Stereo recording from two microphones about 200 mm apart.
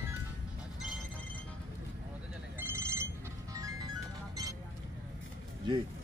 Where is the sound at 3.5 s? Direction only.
15° right (ahead or behind).